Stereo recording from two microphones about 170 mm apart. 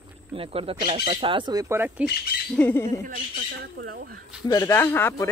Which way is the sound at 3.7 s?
70° right (ahead or behind).